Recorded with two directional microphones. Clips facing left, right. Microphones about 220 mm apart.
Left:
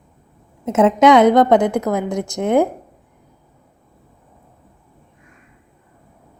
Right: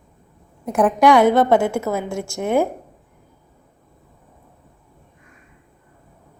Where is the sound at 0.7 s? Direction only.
20° left (ahead or behind).